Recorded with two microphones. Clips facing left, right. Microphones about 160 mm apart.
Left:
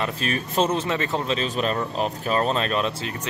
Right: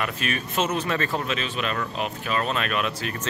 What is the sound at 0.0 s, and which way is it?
Speech, 35° left (ahead or behind).